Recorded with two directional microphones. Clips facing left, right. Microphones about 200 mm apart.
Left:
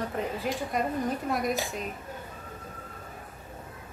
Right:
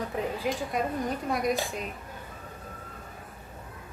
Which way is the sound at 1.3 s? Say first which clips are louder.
Right 3 dB; centre (ahead or behind).